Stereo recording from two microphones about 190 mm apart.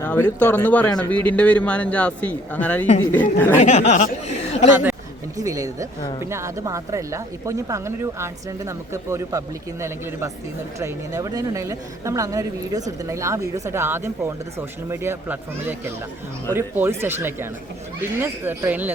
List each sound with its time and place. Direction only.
0.0 s speech: 10° left (ahead or behind)
3.6 s speech: 40° left (ahead or behind)
5.4 s speech: 20° right (ahead or behind)